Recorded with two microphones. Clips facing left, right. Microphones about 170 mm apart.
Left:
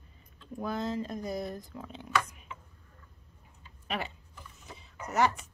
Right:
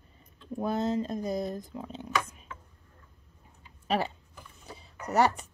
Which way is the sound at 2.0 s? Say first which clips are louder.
Left 1 dB; 25° right (ahead or behind).